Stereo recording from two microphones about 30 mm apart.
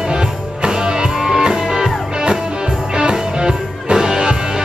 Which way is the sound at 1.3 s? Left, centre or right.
Right.